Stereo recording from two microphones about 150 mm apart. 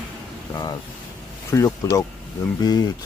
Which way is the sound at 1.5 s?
20° left (ahead or behind).